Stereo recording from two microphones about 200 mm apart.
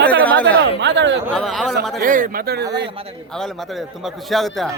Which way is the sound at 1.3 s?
Centre (ahead or behind).